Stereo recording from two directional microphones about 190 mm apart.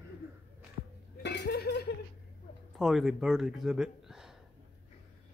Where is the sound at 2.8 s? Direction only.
Centre (ahead or behind).